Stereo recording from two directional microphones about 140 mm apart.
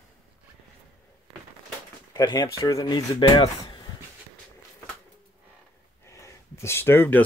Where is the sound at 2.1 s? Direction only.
30° left (ahead or behind).